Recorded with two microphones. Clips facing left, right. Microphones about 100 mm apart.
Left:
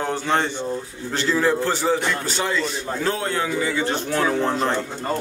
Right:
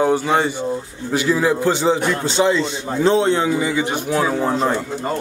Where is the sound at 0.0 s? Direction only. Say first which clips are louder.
Right 6 dB; 10° right (ahead or behind).